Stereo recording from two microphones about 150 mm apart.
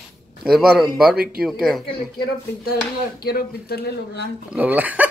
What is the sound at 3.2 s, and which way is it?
Speech, 90° left.